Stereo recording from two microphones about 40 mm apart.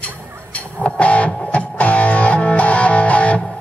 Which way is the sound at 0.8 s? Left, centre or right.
Left.